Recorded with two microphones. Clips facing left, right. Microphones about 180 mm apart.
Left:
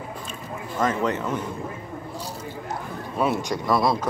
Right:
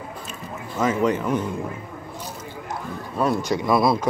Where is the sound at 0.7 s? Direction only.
10° right (ahead or behind).